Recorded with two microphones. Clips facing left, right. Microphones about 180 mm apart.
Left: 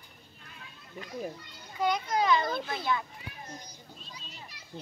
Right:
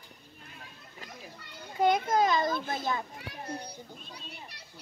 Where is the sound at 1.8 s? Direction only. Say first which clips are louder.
Right 4 dB; 50° right (ahead or behind).